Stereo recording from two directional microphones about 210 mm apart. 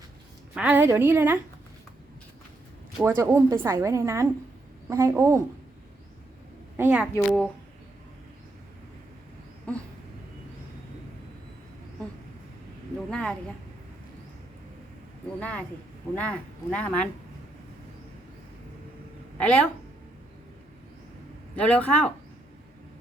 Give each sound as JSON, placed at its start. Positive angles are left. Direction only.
{"t": 0.5, "sound": "a woman's voice", "side_deg": -5}
{"t": 3.2, "sound": "a woman's voice", "side_deg": -10}
{"t": 6.7, "sound": "a woman's voice", "side_deg": -5}
{"t": 9.7, "sound": "dog", "side_deg": 5}
{"t": 13.1, "sound": "speech", "side_deg": 5}
{"t": 15.4, "sound": "speech", "side_deg": 5}
{"t": 19.4, "sound": "speech", "side_deg": 5}
{"t": 21.5, "sound": "speech", "side_deg": 5}